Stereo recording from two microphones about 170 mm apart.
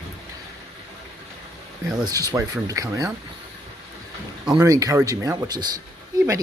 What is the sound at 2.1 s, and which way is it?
Speech, 20° right (ahead or behind).